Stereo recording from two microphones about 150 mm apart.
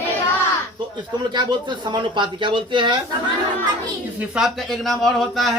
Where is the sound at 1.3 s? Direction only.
30° right (ahead or behind).